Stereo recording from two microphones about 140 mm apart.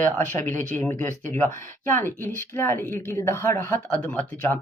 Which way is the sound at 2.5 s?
15° left (ahead or behind).